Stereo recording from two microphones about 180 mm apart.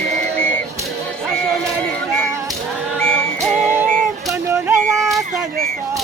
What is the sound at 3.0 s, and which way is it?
Music, 5° left (ahead or behind).